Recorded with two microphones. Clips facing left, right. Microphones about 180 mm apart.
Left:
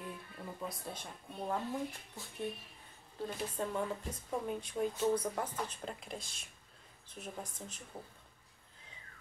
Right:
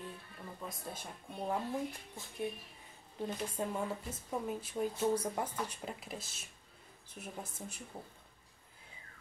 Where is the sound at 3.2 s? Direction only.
10° right (ahead or behind).